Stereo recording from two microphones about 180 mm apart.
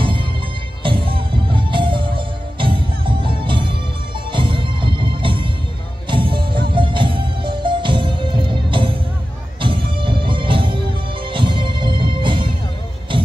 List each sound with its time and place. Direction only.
0.0 s music: 30° right (ahead or behind)